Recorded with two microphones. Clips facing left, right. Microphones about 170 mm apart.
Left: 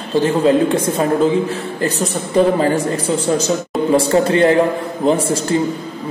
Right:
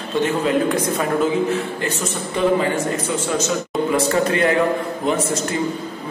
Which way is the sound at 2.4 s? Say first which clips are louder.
Left 5 dB; 35° left (ahead or behind).